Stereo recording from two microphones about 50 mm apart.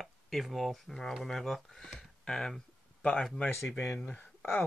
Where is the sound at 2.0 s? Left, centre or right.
Centre.